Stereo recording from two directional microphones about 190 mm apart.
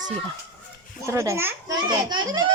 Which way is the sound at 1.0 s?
15° right (ahead or behind).